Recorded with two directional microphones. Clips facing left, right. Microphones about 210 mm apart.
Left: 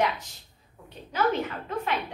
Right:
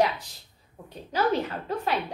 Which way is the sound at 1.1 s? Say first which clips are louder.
Right 1 dB; 35° right (ahead or behind).